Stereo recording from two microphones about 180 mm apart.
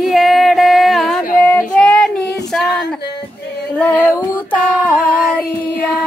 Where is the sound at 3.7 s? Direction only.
10° left (ahead or behind).